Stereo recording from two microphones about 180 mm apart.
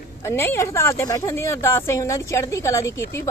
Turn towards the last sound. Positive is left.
turn(degrees=15)  # may be behind; listen again after turning